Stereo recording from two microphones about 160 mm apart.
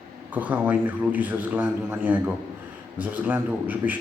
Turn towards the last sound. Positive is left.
turn(degrees=-10)  # may be behind; listen again after turning